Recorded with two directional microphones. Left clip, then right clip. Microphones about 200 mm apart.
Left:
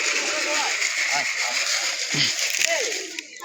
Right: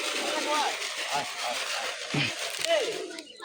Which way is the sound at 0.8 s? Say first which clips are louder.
Left 8 dB; 50° right (ahead or behind).